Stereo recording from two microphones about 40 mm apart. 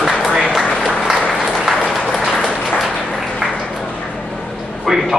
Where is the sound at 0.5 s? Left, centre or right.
Centre.